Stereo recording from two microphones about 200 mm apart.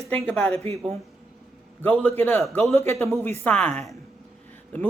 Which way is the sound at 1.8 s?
10° left (ahead or behind).